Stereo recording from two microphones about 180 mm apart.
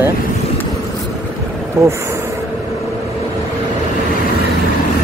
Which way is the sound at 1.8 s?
15° right (ahead or behind).